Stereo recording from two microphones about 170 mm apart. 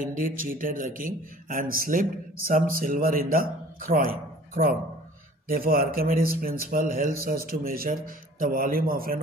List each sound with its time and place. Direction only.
0.0 s a man's voice: 55° right (ahead or behind)
5.5 s a man's voice: 55° right (ahead or behind)